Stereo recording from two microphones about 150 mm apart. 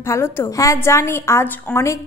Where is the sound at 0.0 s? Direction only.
15° left (ahead or behind).